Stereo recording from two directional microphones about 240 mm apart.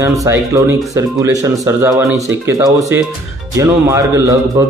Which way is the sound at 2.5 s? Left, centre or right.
Centre.